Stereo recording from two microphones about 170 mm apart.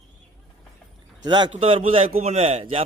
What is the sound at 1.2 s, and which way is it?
A man's voice, 25° right (ahead or behind).